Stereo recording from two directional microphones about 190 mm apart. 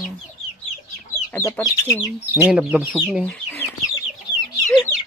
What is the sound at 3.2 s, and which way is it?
Chicken, 10° left (ahead or behind).